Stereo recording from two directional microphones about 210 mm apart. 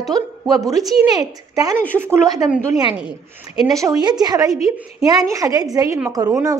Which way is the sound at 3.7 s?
15° right (ahead or behind).